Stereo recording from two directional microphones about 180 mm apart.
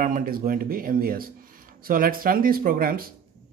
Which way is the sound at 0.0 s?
50° right (ahead or behind).